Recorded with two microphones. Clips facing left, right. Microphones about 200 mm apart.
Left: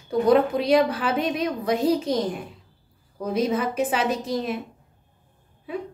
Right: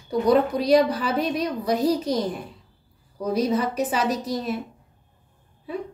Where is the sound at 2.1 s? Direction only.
25° left (ahead or behind).